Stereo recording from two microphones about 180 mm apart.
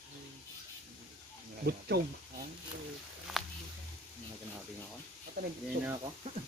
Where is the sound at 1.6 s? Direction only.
60° right (ahead or behind).